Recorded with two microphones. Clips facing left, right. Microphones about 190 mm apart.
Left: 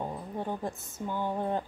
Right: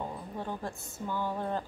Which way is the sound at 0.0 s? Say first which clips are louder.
Left 3 dB; 15° left (ahead or behind).